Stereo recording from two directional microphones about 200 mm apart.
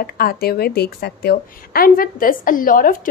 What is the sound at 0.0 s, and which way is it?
A woman's voice, 50° left (ahead or behind).